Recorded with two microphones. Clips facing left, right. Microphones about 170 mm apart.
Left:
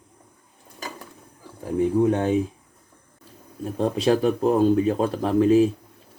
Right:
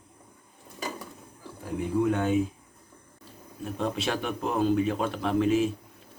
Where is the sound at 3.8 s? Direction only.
35° left (ahead or behind).